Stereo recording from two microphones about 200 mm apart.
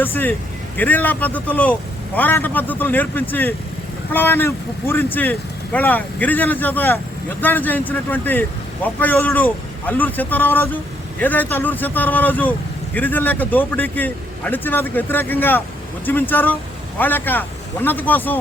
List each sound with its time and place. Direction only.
0.0 s speech: 10° left (ahead or behind)